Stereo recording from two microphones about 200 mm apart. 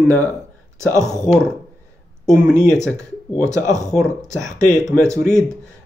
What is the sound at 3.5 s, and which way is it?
Speech, 15° right (ahead or behind).